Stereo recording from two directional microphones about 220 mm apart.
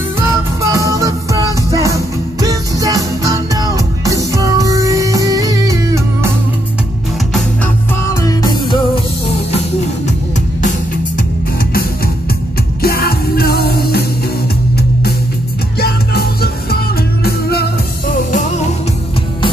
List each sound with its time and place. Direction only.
0.3 s music: 15° right (ahead or behind)
7.9 s music: 15° left (ahead or behind)
12.8 s music: 45° left (ahead or behind)
15.8 s music: 45° left (ahead or behind)